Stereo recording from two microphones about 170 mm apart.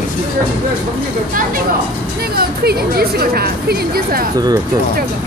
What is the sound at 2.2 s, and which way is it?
A woman's voice, 65° right (ahead or behind).